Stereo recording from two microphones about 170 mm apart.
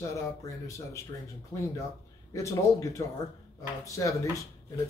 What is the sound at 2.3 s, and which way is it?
Speech, 20° left (ahead or behind).